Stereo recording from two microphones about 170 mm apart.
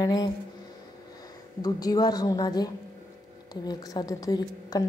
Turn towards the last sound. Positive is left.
turn(degrees=20)  # may be behind; listen again after turning